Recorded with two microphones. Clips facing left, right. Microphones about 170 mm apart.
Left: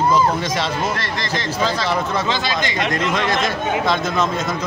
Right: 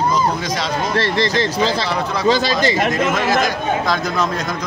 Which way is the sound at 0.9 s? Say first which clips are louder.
Right 7 dB; 30° right (ahead or behind).